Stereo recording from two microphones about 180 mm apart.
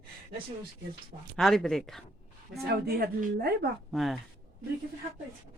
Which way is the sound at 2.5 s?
60° right (ahead or behind).